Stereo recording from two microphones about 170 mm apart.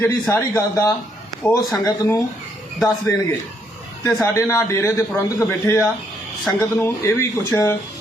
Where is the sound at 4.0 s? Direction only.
15° left (ahead or behind).